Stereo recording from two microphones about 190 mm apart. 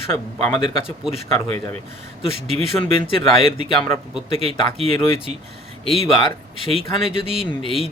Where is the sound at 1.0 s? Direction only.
Centre (ahead or behind).